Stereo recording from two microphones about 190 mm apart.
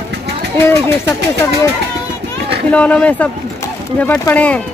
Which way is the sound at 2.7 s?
5° left (ahead or behind).